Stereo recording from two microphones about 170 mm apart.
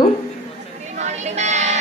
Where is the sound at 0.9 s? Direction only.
45° right (ahead or behind).